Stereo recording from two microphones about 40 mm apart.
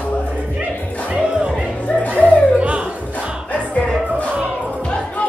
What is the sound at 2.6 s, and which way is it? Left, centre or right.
Music, right.